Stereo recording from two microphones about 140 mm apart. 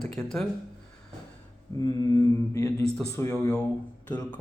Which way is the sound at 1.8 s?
25° left (ahead or behind).